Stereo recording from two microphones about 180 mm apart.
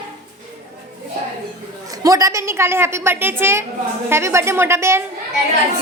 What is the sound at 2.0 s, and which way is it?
A woman's voice, 20° right (ahead or behind).